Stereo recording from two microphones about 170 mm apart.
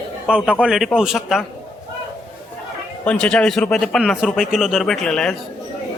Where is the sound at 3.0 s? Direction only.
5° left (ahead or behind).